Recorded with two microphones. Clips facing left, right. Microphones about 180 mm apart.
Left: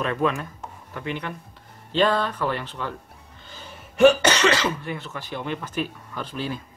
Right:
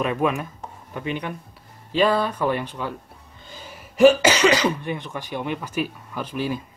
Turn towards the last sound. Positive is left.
turn(degrees=-10)  # may be behind; listen again after turning